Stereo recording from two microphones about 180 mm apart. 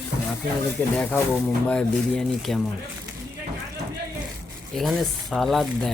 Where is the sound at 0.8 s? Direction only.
10° left (ahead or behind).